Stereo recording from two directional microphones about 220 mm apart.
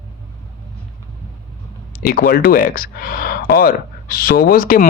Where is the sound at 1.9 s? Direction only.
40° left (ahead or behind).